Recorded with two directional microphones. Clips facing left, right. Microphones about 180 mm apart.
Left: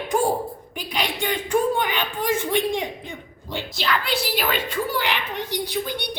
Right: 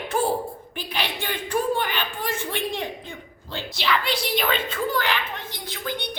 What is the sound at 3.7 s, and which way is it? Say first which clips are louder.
A woman's voice: even; centre (ahead or behind).